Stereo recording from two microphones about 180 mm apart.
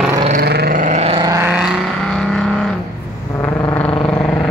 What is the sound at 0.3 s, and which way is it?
Vehicle, 60° right (ahead or behind).